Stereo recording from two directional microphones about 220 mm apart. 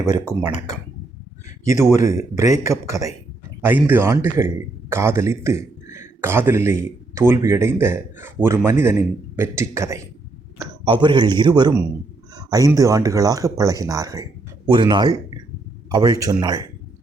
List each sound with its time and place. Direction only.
0.0 s a man's voice: 15° right (ahead or behind)
2.5 s a man's voice: 15° right (ahead or behind)